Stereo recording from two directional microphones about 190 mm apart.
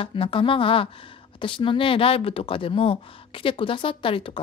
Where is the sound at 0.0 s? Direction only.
30° left (ahead or behind).